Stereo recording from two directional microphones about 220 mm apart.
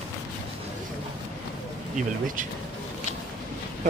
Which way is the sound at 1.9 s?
35° right (ahead or behind).